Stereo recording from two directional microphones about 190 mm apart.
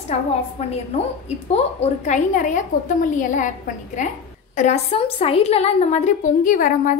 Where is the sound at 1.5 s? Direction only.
35° left (ahead or behind).